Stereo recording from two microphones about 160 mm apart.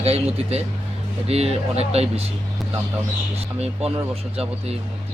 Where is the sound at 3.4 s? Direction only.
40° right (ahead or behind).